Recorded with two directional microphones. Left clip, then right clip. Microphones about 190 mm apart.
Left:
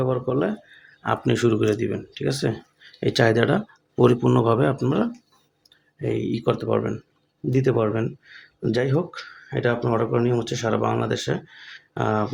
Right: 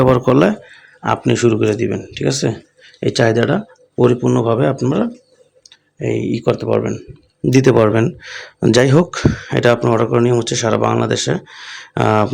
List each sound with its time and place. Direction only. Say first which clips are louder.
0.0 s speech: right 11 dB; 40° right (ahead or behind)
0.7 s speech: right 7 dB; 20° right (ahead or behind)
7.5 s speech: right 10 dB; 30° right (ahead or behind)